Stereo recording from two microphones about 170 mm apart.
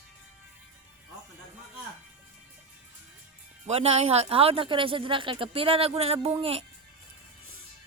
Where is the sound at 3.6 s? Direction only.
35° right (ahead or behind).